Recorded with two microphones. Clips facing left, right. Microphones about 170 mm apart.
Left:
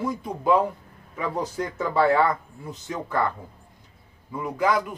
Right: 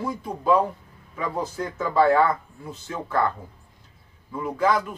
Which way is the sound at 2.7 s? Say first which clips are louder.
Even; 20° left (ahead or behind).